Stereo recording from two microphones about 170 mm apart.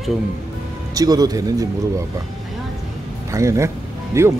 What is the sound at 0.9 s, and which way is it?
Speech, 20° right (ahead or behind).